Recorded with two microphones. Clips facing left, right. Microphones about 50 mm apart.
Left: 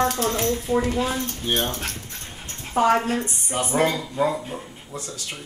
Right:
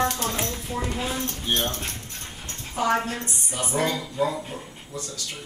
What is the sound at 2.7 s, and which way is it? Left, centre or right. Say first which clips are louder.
Speech: left 5 dB; left.